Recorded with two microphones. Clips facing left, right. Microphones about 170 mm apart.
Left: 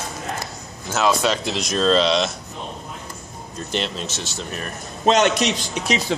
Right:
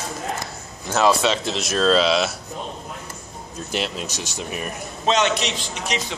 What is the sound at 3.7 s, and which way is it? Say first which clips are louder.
Speech: even; 5° right (ahead or behind).